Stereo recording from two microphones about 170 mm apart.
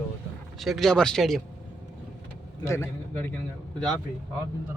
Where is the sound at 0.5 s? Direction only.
Centre (ahead or behind).